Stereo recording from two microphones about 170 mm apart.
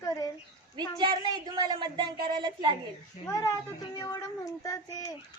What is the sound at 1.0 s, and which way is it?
A woman's voice, 25° right (ahead or behind).